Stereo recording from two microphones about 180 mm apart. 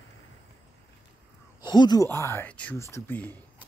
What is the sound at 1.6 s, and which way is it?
Speech, 25° left (ahead or behind).